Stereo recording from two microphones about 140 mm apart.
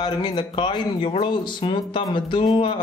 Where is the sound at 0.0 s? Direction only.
30° left (ahead or behind).